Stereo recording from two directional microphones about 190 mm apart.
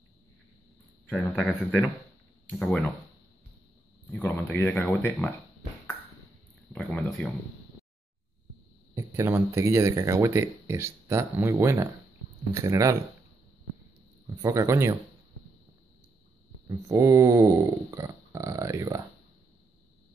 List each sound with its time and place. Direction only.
1.0 s a man's voice: 5° left (ahead or behind)
4.1 s speech: 10° left (ahead or behind)
6.7 s a man's voice: 5° left (ahead or behind)
8.9 s speech: 15° right (ahead or behind)
14.4 s speech: 15° right (ahead or behind)
16.6 s speech: 15° right (ahead or behind)